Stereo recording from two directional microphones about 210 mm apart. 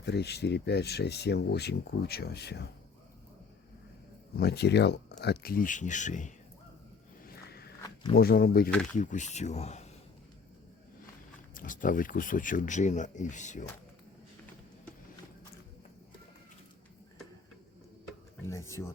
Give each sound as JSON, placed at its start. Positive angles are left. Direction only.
{"t": 0.0, "sound": "speech", "side_deg": 50}
{"t": 4.4, "sound": "speech", "side_deg": 50}
{"t": 7.3, "sound": "walk", "side_deg": 50}
{"t": 7.8, "sound": "a sound", "side_deg": 20}
{"t": 8.1, "sound": "speech", "side_deg": 45}
{"t": 8.7, "sound": "speech", "side_deg": 5}
{"t": 9.0, "sound": "speech", "side_deg": 35}
{"t": 11.5, "sound": "speech", "side_deg": 40}
{"t": 18.4, "sound": "speech", "side_deg": 15}